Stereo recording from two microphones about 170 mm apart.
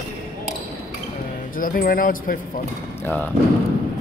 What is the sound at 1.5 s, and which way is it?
Speech, 55° left (ahead or behind).